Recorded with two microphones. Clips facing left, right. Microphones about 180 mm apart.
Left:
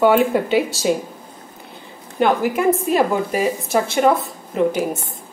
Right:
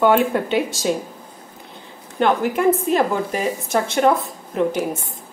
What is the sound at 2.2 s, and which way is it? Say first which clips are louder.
Speech: even; 5° left (ahead or behind).